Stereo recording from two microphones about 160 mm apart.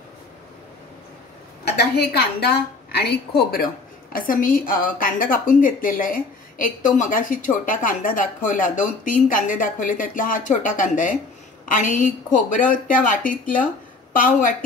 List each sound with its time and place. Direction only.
1.6 s a woman's voice: 90° left; by 13.6 s 55° left (ahead or behind)